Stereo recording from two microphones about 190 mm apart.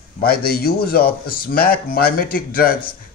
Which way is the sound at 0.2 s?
55° left (ahead or behind).